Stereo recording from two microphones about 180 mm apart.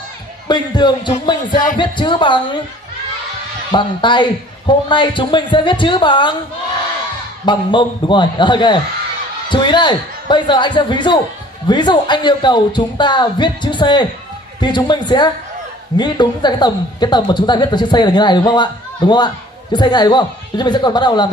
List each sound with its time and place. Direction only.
0.5 s a woman's voice: 25° left (ahead or behind)
3.7 s a woman's voice: 25° left (ahead or behind)
7.4 s a woman's voice: 25° left (ahead or behind)